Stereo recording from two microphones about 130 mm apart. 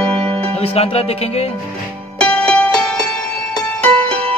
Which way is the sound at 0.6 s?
50° left (ahead or behind).